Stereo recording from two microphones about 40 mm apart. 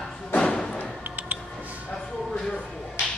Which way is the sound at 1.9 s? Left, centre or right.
Centre.